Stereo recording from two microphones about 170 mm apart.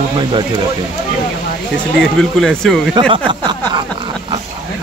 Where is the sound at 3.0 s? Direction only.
30° right (ahead or behind).